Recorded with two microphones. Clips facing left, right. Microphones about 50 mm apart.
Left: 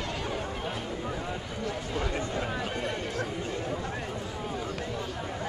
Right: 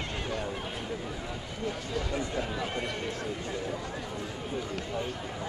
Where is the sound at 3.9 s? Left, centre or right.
Left.